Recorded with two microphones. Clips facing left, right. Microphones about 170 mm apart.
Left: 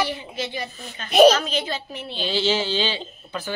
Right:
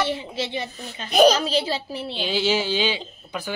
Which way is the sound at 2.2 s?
10° right (ahead or behind).